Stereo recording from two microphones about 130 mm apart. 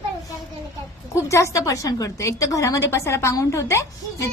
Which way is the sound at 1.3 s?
25° left (ahead or behind).